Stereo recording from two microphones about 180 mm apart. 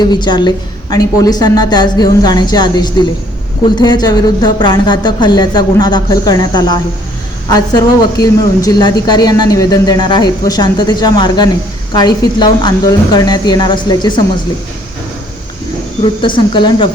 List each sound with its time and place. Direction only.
0.1 s speech: 25° left (ahead or behind)
16.2 s speech: 25° left (ahead or behind)